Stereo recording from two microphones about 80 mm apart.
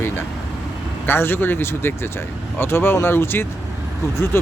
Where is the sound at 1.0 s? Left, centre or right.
Left.